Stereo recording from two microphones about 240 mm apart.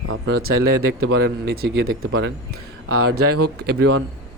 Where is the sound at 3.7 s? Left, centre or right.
Right.